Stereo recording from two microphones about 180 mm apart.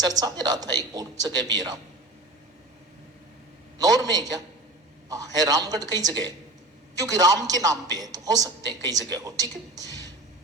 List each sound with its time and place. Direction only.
0.0 s speech: 20° right (ahead or behind)
3.8 s speech: 20° right (ahead or behind)